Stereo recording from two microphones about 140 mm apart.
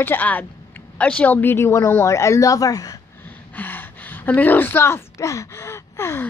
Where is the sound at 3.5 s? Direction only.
15° left (ahead or behind).